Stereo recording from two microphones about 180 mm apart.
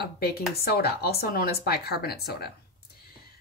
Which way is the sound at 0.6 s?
60° left (ahead or behind).